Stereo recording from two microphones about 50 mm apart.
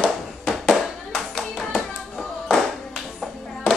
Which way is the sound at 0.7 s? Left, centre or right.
Centre.